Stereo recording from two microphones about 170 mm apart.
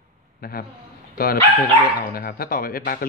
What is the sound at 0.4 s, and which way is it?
A man's voice, 60° left (ahead or behind).